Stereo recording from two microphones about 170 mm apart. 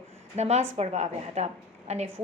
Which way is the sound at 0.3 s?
40° right (ahead or behind).